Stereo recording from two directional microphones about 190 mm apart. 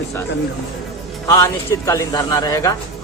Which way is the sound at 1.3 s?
15° left (ahead or behind).